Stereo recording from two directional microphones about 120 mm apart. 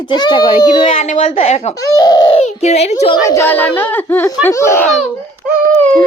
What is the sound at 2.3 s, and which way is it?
Speech, 65° left (ahead or behind).